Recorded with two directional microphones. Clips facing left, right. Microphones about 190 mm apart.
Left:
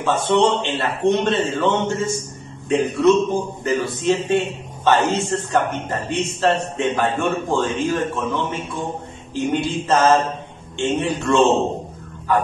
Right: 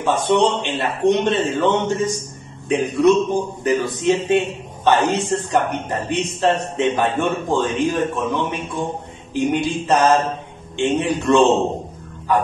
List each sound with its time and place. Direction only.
0.0 s a man's voice: 15° right (ahead or behind)